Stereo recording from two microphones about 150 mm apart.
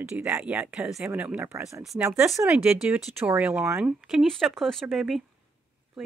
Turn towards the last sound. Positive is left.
turn(degrees=0)  # may be behind; listen again after turning